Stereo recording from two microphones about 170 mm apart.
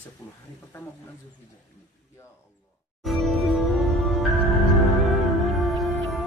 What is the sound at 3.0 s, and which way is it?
Music, centre (ahead or behind).